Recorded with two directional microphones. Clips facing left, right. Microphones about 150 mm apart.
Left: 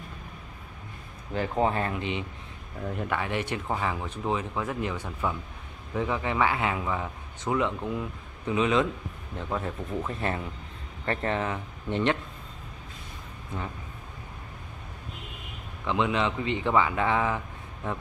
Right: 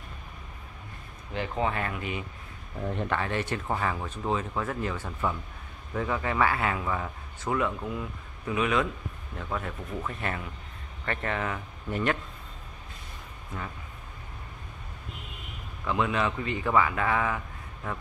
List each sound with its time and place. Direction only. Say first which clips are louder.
1.6 s speech: left 4 dB; 30° left (ahead or behind)
2.9 s speech: even; 10° left (ahead or behind); by 12.2 s 25° left (ahead or behind)
15.9 s speech: left 1 dB; 20° left (ahead or behind)